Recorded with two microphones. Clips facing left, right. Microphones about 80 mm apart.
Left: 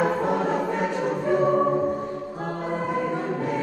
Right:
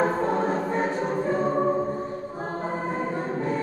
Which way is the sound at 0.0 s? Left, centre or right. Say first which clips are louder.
Left 1 dB; right.